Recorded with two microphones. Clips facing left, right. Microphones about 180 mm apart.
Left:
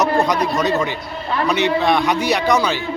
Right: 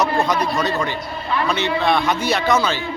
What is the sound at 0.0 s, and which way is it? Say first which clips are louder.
A man's voice: left 2 dB; 20° left (ahead or behind).